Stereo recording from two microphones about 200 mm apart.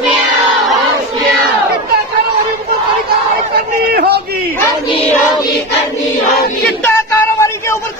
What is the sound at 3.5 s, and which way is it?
Chatter, 50° right (ahead or behind).